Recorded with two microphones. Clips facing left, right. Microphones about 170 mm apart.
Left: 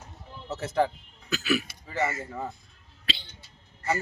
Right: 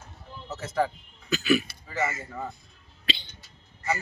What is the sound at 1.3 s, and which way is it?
Speech, 5° left (ahead or behind).